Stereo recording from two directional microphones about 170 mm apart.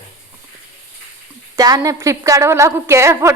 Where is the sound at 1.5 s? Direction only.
20° right (ahead or behind).